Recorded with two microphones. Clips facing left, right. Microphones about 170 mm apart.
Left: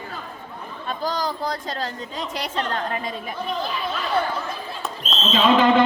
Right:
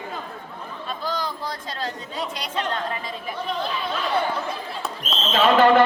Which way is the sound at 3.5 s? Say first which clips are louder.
Even; centre (ahead or behind).